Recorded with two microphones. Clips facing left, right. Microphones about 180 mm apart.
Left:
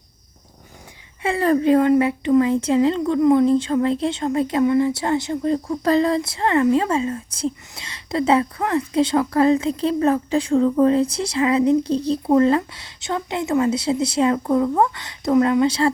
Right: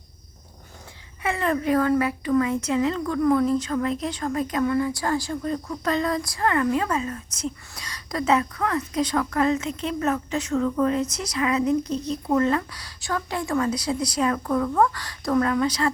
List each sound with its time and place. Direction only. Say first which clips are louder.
1.2 s a woman's voice: left 6 dB; 30° left (ahead or behind)